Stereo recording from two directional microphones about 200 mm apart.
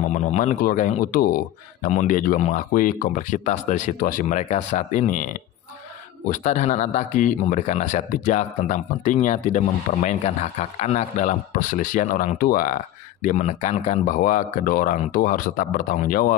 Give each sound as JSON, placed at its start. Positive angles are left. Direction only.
{"t": 0.1, "sound": "speech", "side_deg": 35}